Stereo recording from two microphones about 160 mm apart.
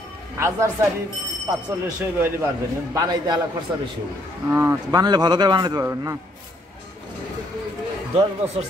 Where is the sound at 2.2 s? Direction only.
15° right (ahead or behind).